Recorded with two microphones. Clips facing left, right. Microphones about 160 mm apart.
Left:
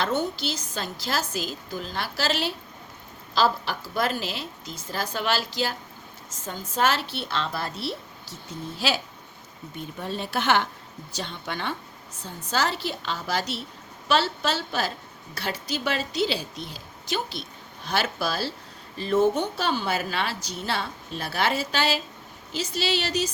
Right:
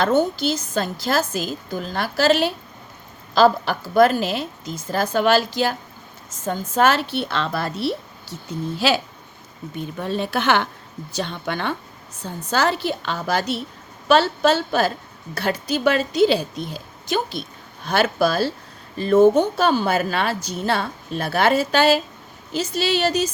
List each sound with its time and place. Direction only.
0.0 s a woman's voice: 50° right (ahead or behind); by 9.0 s 70° right (ahead or behind)
10.0 s a woman's voice: 65° right (ahead or behind); by 23.3 s 50° right (ahead or behind)